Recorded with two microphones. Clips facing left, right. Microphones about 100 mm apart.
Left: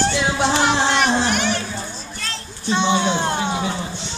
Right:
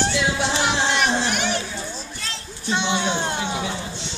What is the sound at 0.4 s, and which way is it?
Music, 40° left (ahead or behind).